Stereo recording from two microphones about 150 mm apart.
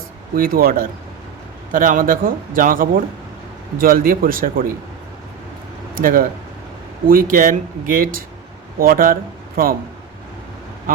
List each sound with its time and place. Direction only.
0.3 s a man's voice: 75° right (ahead or behind)
1.7 s a man's voice: 65° right (ahead or behind)
5.9 s a man's voice: 70° right (ahead or behind)